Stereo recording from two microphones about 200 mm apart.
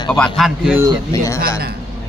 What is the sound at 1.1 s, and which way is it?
Speech, 15° left (ahead or behind).